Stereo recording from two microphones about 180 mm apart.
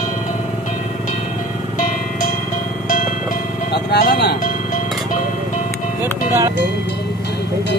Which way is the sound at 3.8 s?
65° left (ahead or behind).